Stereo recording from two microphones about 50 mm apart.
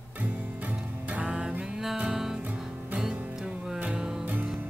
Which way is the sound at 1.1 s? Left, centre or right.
Right.